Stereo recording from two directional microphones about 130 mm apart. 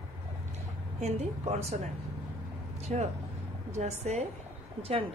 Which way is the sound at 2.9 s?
65° right (ahead or behind).